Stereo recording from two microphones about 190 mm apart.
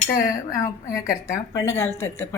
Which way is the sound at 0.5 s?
15° left (ahead or behind).